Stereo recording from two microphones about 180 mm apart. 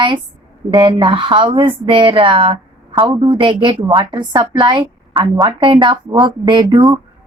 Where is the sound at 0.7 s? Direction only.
25° right (ahead or behind).